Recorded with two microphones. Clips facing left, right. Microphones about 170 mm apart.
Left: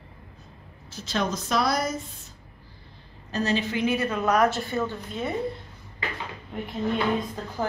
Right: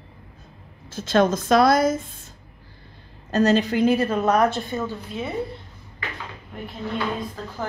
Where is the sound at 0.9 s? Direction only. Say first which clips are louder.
Right 9 dB; 50° right (ahead or behind).